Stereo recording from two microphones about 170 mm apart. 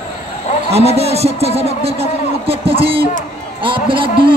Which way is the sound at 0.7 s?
40° right (ahead or behind).